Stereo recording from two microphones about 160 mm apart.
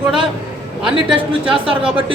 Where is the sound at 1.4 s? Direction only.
5° right (ahead or behind).